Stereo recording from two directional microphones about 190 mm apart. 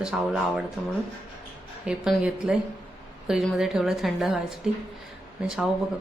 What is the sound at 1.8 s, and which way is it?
Speech, 5° right (ahead or behind).